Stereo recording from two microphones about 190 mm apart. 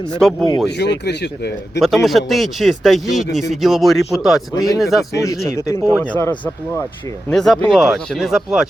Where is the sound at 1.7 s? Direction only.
Centre (ahead or behind).